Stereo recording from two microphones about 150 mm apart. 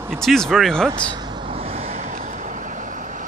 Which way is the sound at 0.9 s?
30° right (ahead or behind).